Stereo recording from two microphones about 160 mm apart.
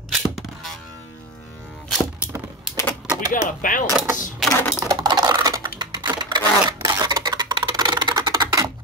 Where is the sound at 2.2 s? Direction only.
10° right (ahead or behind).